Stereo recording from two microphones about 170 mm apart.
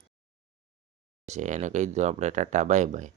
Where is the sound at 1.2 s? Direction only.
45° right (ahead or behind).